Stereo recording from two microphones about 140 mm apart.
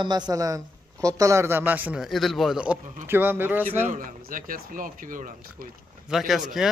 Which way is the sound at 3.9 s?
80° right.